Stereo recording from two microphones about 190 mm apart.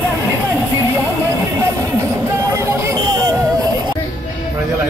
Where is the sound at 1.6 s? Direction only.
15° right (ahead or behind).